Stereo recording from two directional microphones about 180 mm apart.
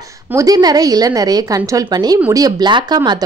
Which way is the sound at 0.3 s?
20° right (ahead or behind).